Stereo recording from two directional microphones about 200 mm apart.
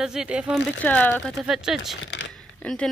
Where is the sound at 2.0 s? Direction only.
65° left (ahead or behind).